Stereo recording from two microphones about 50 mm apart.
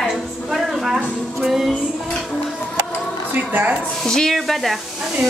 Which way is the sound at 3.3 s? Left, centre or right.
Right.